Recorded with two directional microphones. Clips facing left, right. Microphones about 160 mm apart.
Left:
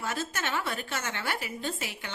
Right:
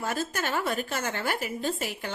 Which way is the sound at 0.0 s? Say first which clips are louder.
Right 3 dB; 40° right (ahead or behind).